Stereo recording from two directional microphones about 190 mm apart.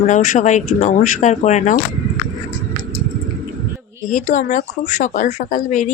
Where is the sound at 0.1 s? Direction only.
40° left (ahead or behind).